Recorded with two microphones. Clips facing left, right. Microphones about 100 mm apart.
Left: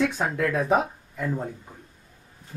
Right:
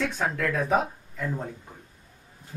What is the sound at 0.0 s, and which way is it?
Speech, 5° left (ahead or behind).